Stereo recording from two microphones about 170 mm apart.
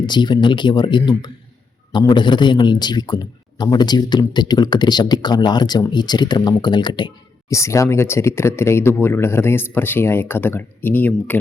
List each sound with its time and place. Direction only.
0.0 s a man's voice: 25° left (ahead or behind); by 11.3 s 10° left (ahead or behind)